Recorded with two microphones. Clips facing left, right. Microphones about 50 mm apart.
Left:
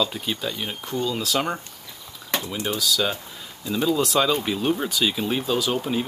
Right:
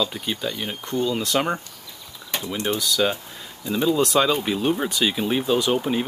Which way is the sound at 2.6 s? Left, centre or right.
Centre.